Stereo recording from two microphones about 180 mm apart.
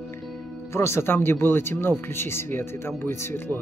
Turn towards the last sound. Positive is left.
turn(degrees=15)  # may be behind; listen again after turning